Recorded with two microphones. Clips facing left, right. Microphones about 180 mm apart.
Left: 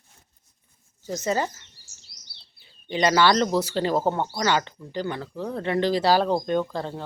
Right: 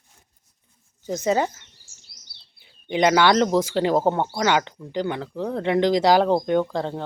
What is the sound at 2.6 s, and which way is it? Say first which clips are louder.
Speech: right 4 dB; 15° right (ahead or behind).